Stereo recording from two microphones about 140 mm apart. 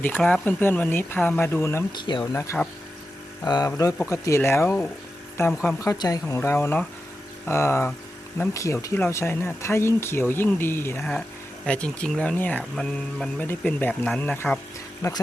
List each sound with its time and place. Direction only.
0.0 s speech: 10° left (ahead or behind)
2.0 s speech: 35° left (ahead or behind)
2.3 s speech: 15° left (ahead or behind)
3.4 s speech: 30° left (ahead or behind); by 5.7 s 5° left (ahead or behind)
5.8 s speech: 25° left (ahead or behind); by 14.6 s 10° left (ahead or behind)
15.0 s speech: 20° left (ahead or behind)